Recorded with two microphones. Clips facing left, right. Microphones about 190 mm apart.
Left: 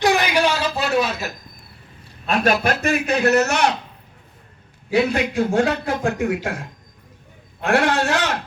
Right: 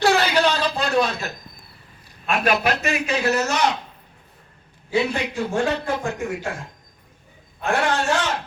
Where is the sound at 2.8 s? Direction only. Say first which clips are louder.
Left 4 dB; 55° left (ahead or behind).